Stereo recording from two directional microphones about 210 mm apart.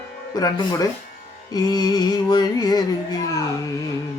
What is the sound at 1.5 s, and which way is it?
Music, 20° left (ahead or behind).